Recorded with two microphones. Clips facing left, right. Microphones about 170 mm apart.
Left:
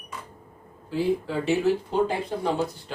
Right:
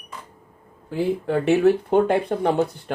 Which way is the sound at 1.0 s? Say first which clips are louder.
Right 3 dB; 60° right (ahead or behind).